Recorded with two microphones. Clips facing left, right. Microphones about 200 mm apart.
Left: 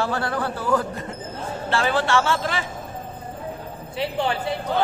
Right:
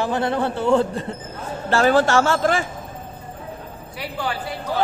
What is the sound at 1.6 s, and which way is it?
A man's voice, 45° right (ahead or behind).